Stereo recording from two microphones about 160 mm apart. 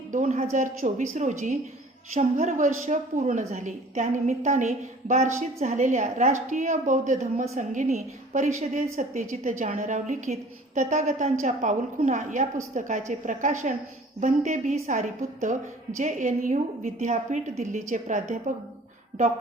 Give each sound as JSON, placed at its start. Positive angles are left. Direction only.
{"t": 0.1, "sound": "a woman's voice", "side_deg": -45}